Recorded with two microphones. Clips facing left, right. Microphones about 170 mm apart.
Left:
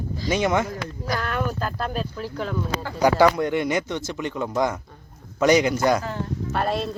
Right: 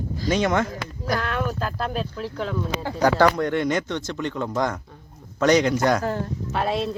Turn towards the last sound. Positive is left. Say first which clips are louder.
# even
turn(degrees=0)  # may be behind; listen again after turning